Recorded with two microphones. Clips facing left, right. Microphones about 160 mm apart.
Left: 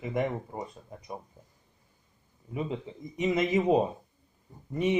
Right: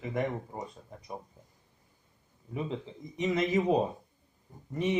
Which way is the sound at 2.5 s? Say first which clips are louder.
Left 2 dB; 10° left (ahead or behind).